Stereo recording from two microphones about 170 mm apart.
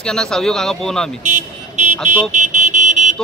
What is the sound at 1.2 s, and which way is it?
Vehicle, 45° right (ahead or behind).